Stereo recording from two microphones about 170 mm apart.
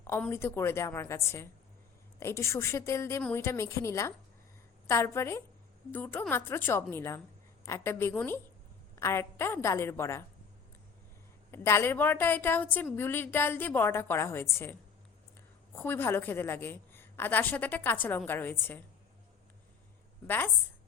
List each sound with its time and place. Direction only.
0.0 s a woman's voice: 15° left (ahead or behind)
11.5 s a woman's voice: 15° left (ahead or behind)
20.2 s a woman's voice: 10° left (ahead or behind)